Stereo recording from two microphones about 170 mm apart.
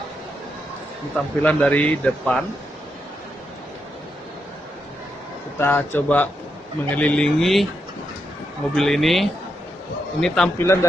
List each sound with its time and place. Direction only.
1.1 s a man's voice: 5° left (ahead or behind)
5.6 s a man's voice: 10° left (ahead or behind)
8.7 s speech: centre (ahead or behind)
10.6 s a man's voice: 15° left (ahead or behind)